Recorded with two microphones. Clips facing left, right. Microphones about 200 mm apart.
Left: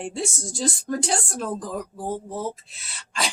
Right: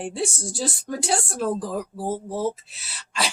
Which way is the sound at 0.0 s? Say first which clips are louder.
Right 2 dB; 5° right (ahead or behind).